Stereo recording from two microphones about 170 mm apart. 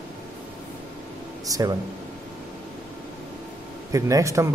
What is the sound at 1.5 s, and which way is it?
Speech, 20° right (ahead or behind).